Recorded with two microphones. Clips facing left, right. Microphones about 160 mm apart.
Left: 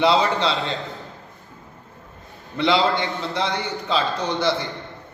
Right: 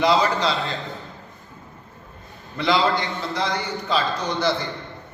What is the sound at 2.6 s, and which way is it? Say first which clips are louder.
A man's voice: left 1 dB; 25° left (ahead or behind).